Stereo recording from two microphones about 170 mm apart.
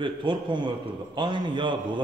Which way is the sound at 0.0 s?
30° right (ahead or behind).